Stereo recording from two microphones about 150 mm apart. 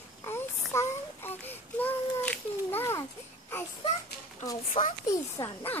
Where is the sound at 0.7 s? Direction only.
20° left (ahead or behind).